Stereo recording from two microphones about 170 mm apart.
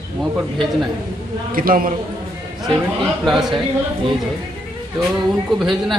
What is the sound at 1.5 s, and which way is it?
Speech, 55° right (ahead or behind).